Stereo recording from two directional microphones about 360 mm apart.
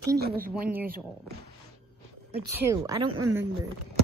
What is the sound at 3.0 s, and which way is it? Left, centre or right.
Speech, right.